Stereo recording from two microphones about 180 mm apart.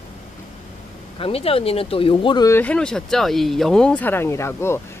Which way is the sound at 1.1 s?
30° left (ahead or behind).